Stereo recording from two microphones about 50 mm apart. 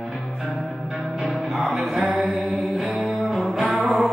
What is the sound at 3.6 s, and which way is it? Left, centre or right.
Music, right.